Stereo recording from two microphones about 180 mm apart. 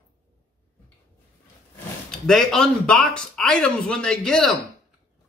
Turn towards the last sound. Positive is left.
turn(degrees=0)  # may be behind; listen again after turning